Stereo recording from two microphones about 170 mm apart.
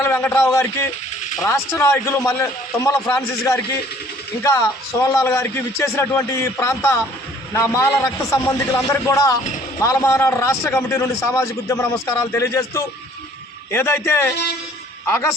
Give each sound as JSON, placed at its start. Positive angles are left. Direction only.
{"t": 0.0, "sound": "a man's voice", "side_deg": 15}
{"t": 4.4, "sound": "a man's voice", "side_deg": 15}